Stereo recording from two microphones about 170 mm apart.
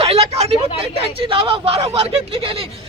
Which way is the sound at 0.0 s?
35° right (ahead or behind).